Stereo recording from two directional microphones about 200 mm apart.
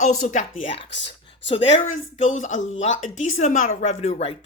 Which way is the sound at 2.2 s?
40° left (ahead or behind).